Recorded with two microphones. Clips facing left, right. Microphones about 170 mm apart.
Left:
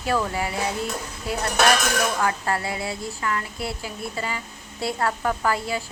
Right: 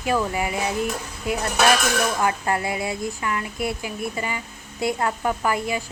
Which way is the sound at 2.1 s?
20° right (ahead or behind).